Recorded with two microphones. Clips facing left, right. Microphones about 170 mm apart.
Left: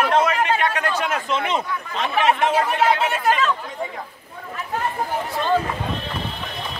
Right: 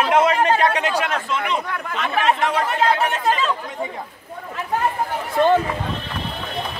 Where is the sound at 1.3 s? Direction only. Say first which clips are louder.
Left 1 dB; 25° left (ahead or behind).